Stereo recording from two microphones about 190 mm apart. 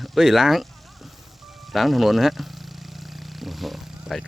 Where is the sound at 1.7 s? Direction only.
Centre (ahead or behind).